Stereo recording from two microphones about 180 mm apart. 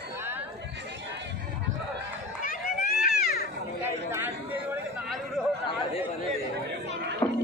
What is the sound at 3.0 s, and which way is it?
Children playing, 55° left (ahead or behind).